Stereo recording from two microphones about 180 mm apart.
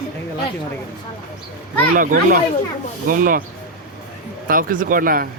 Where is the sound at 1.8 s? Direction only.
50° right (ahead or behind).